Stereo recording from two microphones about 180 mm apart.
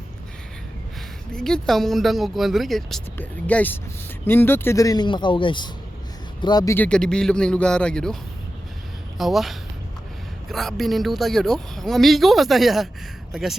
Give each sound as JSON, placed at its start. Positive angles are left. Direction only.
{"t": 1.3, "sound": "a man's voice", "side_deg": 5}
{"t": 6.7, "sound": "speech", "side_deg": 5}